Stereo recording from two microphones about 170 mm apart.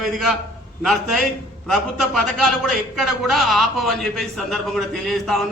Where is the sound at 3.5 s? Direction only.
Centre (ahead or behind).